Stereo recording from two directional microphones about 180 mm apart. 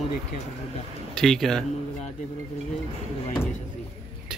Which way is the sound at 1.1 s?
Centre (ahead or behind).